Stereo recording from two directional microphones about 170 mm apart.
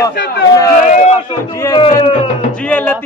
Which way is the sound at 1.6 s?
30° left (ahead or behind).